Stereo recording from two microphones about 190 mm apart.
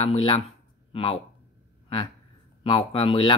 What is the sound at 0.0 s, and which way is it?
Speech, 30° left (ahead or behind).